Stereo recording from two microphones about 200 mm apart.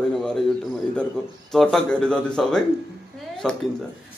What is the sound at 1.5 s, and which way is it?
A woman's voice, centre (ahead or behind).